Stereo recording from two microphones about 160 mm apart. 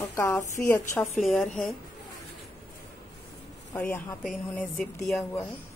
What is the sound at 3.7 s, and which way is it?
Speech, 10° left (ahead or behind).